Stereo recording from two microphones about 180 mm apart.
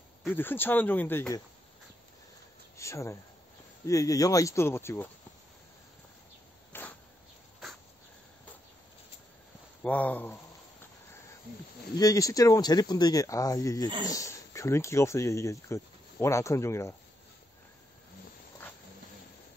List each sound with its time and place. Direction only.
0.2 s speech: 10° left (ahead or behind)
2.8 s speech: 15° left (ahead or behind)
6.7 s a sound: 10° left (ahead or behind)
9.8 s speech: 10° left (ahead or behind)
12.0 s speech: 20° left (ahead or behind)